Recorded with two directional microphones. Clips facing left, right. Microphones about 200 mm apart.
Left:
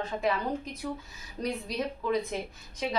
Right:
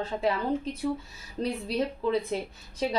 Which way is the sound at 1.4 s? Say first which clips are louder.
Right 3 dB; 30° right (ahead or behind).